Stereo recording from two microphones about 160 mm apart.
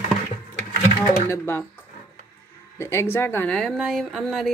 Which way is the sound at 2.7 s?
15° left (ahead or behind).